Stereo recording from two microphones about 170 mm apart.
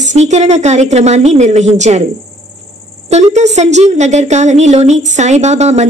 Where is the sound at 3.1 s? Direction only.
40° right (ahead or behind).